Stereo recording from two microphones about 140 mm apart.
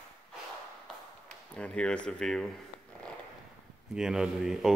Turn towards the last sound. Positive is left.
turn(degrees=-5)  # may be behind; listen again after turning